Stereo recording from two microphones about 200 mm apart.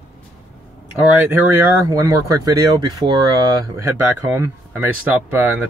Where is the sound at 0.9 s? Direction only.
5° right (ahead or behind).